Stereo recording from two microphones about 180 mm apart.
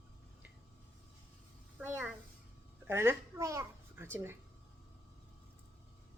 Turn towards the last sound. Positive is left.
turn(degrees=-15)  # may be behind; listen again after turning